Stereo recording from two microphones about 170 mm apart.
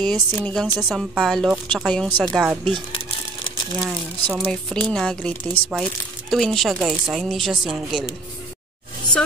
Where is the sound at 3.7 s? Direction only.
Centre (ahead or behind).